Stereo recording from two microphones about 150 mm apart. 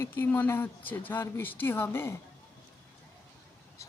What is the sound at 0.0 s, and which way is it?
Speech, 15° left (ahead or behind).